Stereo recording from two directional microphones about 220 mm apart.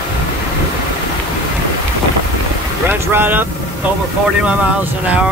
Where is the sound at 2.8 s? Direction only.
10° right (ahead or behind).